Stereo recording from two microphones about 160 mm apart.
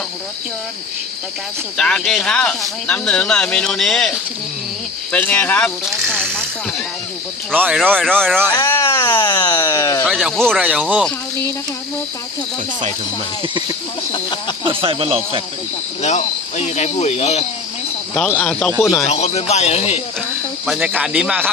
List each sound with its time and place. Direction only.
1.7 s speech: 5° left (ahead or behind)
5.1 s speech: 10° left (ahead or behind)
5.8 s speech: 5° right (ahead or behind)
7.5 s speech: 10° right (ahead or behind)
7.8 s speech: 5° left (ahead or behind)
8.5 s speech: 20° left (ahead or behind)
10.1 s speech: centre (ahead or behind)
13.4 s speech: 30° right (ahead or behind)
14.1 s speech: 30° left (ahead or behind)
14.7 s speech: 35° right (ahead or behind)
16.0 s speech: 45° left (ahead or behind)
18.1 s speech: 10° left (ahead or behind)
19.0 s speech: 45° left (ahead or behind)
20.7 s speech: 10° right (ahead or behind)